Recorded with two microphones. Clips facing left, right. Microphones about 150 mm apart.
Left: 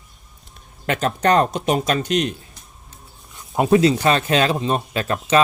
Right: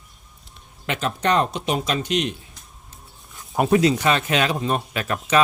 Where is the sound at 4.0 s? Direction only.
35° left (ahead or behind).